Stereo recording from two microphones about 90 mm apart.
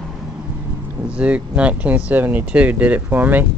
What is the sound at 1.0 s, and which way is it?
Speech, 15° right (ahead or behind).